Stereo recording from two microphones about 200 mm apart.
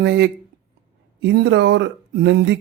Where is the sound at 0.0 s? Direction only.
60° right (ahead or behind).